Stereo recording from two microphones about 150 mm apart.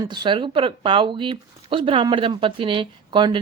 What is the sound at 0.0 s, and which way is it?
Speech, 30° right (ahead or behind).